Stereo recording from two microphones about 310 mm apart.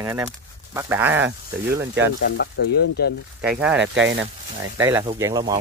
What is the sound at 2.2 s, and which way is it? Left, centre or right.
Speech, left.